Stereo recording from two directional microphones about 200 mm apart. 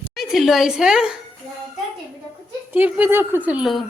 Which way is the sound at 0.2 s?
Centre (ahead or behind).